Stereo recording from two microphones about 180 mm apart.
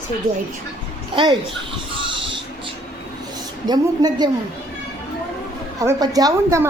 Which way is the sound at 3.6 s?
20° right (ahead or behind).